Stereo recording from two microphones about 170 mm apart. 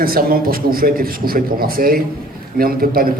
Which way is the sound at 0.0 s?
60° right (ahead or behind).